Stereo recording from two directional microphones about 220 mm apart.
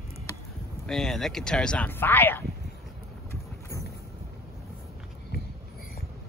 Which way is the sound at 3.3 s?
10° left (ahead or behind).